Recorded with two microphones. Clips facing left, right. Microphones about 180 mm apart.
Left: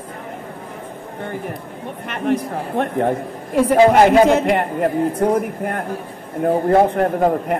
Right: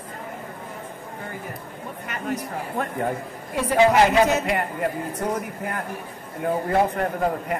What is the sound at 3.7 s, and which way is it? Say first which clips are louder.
A man's voice: left 5 dB; 45° left (ahead or behind).